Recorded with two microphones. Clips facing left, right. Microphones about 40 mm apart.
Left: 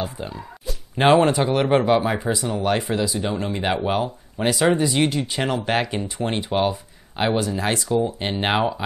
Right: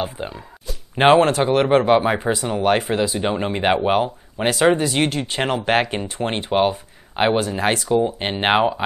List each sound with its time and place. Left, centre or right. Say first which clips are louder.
0.0 s speech: right 2 dB; right
7.3 s speech: right 2 dB; centre
7.9 s speech: right 3 dB; right